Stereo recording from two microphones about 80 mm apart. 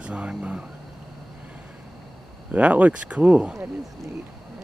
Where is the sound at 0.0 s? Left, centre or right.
Centre.